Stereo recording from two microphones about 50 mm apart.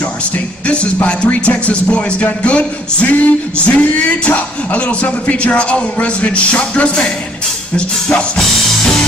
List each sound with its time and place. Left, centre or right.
0.2 s music: left